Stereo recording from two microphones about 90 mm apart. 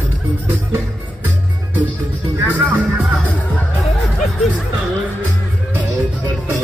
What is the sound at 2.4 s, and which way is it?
Speech, 20° right (ahead or behind).